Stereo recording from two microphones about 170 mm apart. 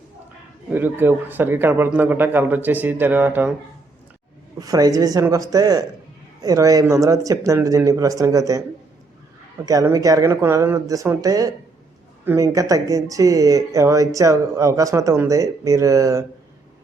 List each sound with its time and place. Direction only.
0.7 s a man's voice: 10° right (ahead or behind)
4.6 s speech: 20° right (ahead or behind)
9.6 s speech: 20° right (ahead or behind)